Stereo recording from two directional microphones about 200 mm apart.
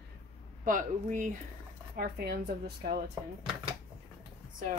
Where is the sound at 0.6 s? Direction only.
40° right (ahead or behind).